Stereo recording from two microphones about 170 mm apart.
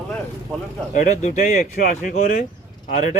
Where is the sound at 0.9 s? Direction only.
45° left (ahead or behind).